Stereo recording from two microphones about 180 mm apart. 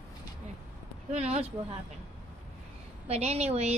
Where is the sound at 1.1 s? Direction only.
35° right (ahead or behind).